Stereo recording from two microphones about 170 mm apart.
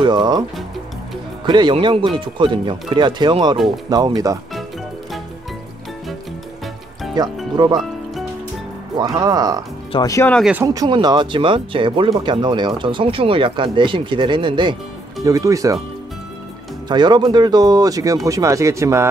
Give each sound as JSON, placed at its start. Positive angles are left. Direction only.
{"t": 0.0, "sound": "speech", "side_deg": -25}
{"t": 7.2, "sound": "speech", "side_deg": -25}
{"t": 8.9, "sound": "speech", "side_deg": -20}
{"t": 9.9, "sound": "speech", "side_deg": 20}
{"t": 10.5, "sound": "speech", "side_deg": -20}
{"t": 16.9, "sound": "speech", "side_deg": -25}